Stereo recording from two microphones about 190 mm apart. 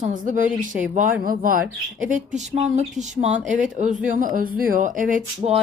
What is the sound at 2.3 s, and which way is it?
Speech, 35° right (ahead or behind).